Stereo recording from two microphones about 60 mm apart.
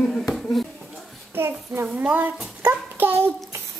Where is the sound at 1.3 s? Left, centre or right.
Right.